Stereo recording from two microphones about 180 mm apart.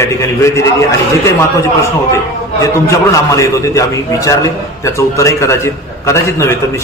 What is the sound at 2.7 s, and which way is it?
A man's voice, 15° left (ahead or behind).